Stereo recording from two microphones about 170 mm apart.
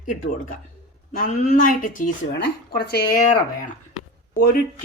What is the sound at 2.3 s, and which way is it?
Speech, 70° left (ahead or behind).